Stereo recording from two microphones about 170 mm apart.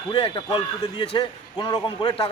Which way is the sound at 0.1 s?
30° left (ahead or behind).